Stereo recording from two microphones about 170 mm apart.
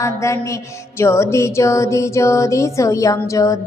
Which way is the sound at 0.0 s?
15° left (ahead or behind).